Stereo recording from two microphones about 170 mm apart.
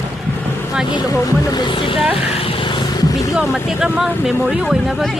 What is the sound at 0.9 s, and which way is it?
Speech, 20° left (ahead or behind).